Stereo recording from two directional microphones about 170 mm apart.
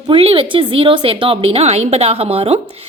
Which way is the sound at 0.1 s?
35° right (ahead or behind).